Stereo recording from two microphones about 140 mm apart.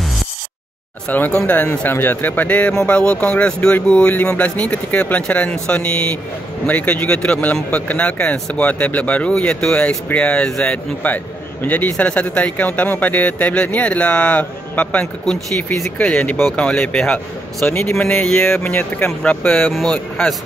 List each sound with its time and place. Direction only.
1.0 s speech: 10° left (ahead or behind)
17.6 s speech: 15° left (ahead or behind)